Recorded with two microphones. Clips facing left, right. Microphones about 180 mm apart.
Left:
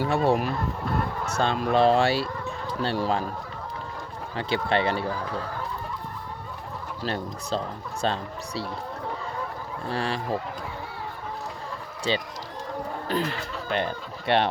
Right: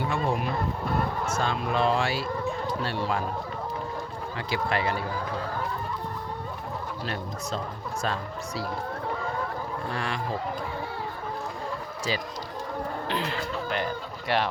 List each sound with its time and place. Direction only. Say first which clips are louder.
0.1 s speech: left 5 dB; 40° left (ahead or behind)
4.4 s speech: left 4 dB; 30° left (ahead or behind)
7.0 s speech: left 2 dB; 30° left (ahead or behind)
9.9 s speech: left 6 dB; 35° left (ahead or behind)
12.1 s speech: left 4 dB; 30° left (ahead or behind)
13.1 s speech: left 6 dB; 40° left (ahead or behind)
13.7 s speech: left 2 dB; 25° left (ahead or behind)